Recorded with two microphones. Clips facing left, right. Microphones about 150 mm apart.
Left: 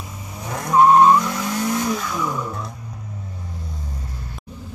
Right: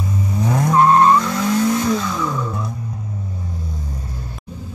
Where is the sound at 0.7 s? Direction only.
10° left (ahead or behind).